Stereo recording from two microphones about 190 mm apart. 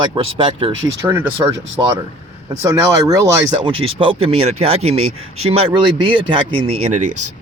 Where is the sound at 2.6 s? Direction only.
15° right (ahead or behind).